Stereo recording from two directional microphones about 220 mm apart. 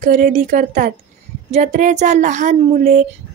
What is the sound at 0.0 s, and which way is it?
Speech, 35° right (ahead or behind).